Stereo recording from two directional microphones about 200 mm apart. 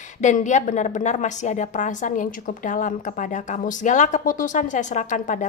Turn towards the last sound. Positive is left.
turn(degrees=40)  # may be behind; listen again after turning